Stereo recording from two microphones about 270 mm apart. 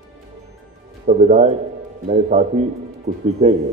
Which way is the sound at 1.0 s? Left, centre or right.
Right.